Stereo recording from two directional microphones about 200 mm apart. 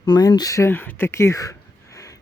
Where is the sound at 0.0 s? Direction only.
20° left (ahead or behind).